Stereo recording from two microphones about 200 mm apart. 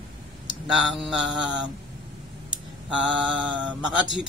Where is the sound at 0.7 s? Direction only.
5° right (ahead or behind).